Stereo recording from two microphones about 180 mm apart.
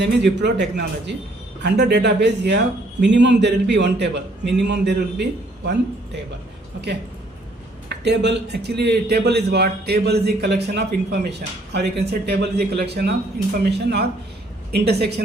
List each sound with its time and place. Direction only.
0.0 s a man's voice: 70° right (ahead or behind)
7.9 s a man's voice: 70° right (ahead or behind)